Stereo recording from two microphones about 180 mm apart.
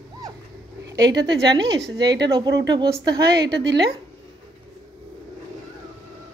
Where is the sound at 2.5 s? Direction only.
80° right.